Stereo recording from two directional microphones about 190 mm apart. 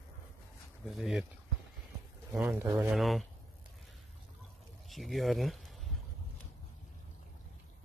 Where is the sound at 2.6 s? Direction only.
15° right (ahead or behind).